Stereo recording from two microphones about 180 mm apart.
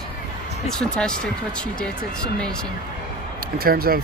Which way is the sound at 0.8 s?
5° left (ahead or behind).